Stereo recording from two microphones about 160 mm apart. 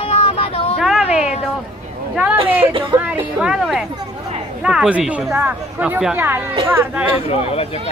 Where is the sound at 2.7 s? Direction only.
35° right (ahead or behind).